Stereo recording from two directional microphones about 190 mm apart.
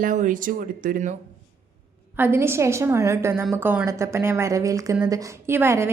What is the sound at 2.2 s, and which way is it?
Speech, 10° right (ahead or behind).